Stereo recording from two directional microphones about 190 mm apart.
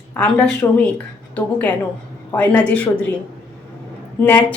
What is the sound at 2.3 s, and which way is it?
Speech, 5° left (ahead or behind).